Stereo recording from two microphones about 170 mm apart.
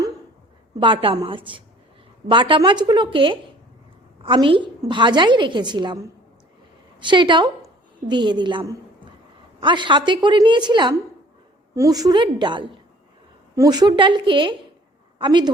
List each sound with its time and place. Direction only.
0.8 s a woman's voice: 30° right (ahead or behind)